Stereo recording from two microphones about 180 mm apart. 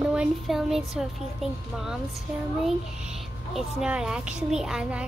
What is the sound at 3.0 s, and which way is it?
A woman's voice, 5° right (ahead or behind).